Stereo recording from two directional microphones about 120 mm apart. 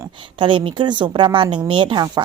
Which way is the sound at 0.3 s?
45° right (ahead or behind).